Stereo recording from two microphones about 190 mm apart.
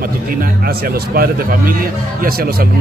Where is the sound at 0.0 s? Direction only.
50° right (ahead or behind).